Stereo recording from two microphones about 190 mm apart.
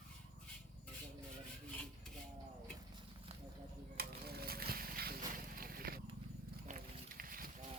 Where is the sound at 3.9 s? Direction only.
55° right (ahead or behind).